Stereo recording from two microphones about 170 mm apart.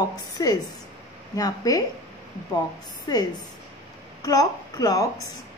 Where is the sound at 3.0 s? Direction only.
25° left (ahead or behind).